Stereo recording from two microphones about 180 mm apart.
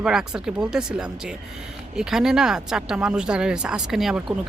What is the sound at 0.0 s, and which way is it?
Speech, 5° right (ahead or behind).